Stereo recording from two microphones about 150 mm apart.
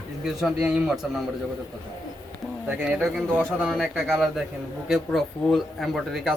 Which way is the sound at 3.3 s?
15° right (ahead or behind).